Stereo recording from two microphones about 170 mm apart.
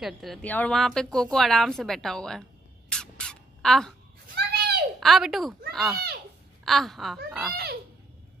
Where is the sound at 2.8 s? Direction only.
5° left (ahead or behind).